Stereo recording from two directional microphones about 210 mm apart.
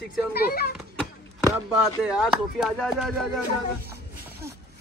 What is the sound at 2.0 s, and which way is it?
Speech, centre (ahead or behind).